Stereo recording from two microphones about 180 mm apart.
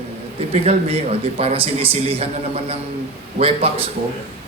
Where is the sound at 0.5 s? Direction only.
35° right (ahead or behind).